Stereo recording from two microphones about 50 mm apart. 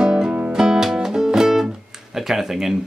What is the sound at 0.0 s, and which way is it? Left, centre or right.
Music, centre.